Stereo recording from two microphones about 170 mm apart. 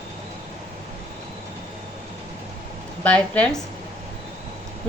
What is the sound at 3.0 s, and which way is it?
Speech, 10° left (ahead or behind).